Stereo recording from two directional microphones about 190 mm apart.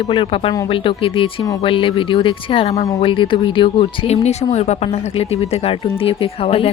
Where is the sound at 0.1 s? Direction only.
30° left (ahead or behind).